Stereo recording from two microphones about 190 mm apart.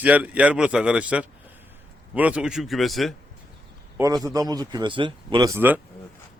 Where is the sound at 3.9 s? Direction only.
20° right (ahead or behind).